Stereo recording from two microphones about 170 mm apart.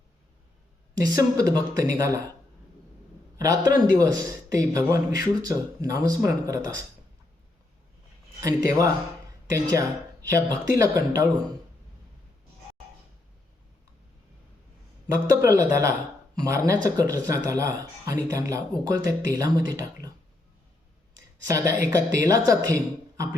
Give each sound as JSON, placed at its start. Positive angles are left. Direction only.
{"t": 1.0, "sound": "speech", "side_deg": -20}
{"t": 3.3, "sound": "speech", "side_deg": -20}
{"t": 8.4, "sound": "speech", "side_deg": -20}
{"t": 15.4, "sound": "speech", "side_deg": -15}
{"t": 21.4, "sound": "speech", "side_deg": -20}